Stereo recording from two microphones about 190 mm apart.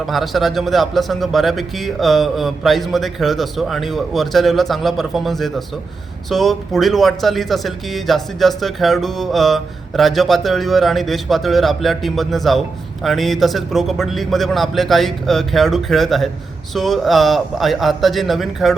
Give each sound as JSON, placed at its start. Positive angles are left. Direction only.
{"t": 0.0, "sound": "speech", "side_deg": 0}